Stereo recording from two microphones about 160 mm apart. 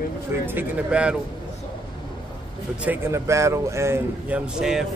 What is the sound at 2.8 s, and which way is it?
A man's voice, 15° right (ahead or behind).